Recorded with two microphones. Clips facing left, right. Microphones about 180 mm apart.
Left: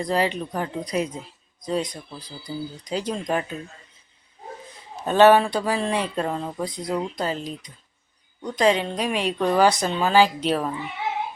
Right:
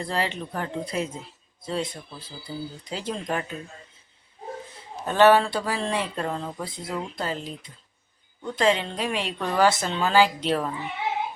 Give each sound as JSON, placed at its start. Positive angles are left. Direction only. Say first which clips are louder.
{"t": 0.0, "sound": "speech", "louder": "left 5 dB", "side_deg": 15}
{"t": 2.5, "sound": "speech", "louder": "left 3 dB", "side_deg": 5}
{"t": 2.9, "sound": "speech", "louder": "left 4 dB", "side_deg": 15}
{"t": 5.0, "sound": "speech", "louder": "left 2 dB", "side_deg": 15}